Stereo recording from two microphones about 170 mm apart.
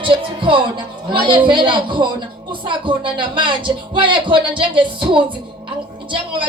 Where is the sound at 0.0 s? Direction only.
30° right (ahead or behind).